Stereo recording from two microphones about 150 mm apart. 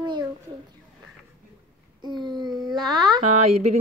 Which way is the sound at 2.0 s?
30° right (ahead or behind).